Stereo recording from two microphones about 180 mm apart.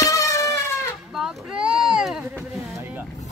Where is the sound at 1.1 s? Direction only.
Centre (ahead or behind).